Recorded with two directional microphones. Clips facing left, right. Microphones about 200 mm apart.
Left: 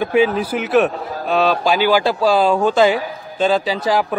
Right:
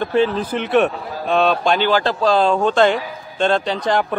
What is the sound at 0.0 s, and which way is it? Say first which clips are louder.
A man's voice: left 2 dB; 10° left (ahead or behind).